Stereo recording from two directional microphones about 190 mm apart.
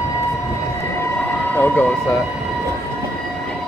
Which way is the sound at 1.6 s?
10° left (ahead or behind).